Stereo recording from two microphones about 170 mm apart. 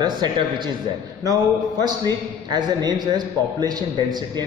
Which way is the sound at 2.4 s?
25° right (ahead or behind).